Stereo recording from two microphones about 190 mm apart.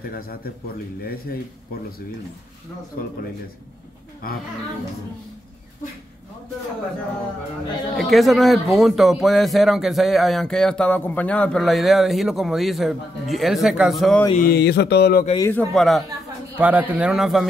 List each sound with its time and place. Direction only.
0.0 s a man's voice: 50° left (ahead or behind)
7.9 s a man's voice: centre (ahead or behind)
14.3 s a man's voice: 50° left (ahead or behind)
15.3 s a man's voice: 15° left (ahead or behind)
15.7 s a man's voice: centre (ahead or behind)